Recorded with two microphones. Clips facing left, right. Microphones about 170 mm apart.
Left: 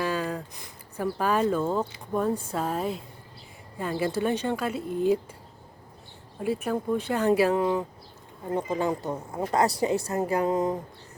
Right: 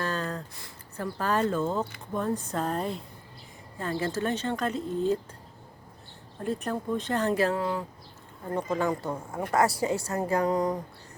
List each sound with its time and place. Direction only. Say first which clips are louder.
0.0 s a sound: left 3 dB; 10° left (ahead or behind)
2.1 s speech: left 3 dB; 10° left (ahead or behind)
6.4 s speech: left 3 dB; 10° left (ahead or behind)